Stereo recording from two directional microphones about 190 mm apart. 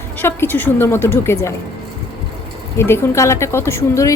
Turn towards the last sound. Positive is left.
turn(degrees=15)  # may be behind; listen again after turning